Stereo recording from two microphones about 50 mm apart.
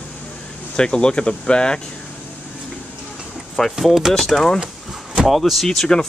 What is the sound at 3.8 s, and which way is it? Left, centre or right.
Speech, centre.